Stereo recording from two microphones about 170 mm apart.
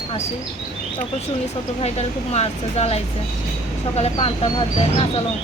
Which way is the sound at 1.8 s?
40° left (ahead or behind).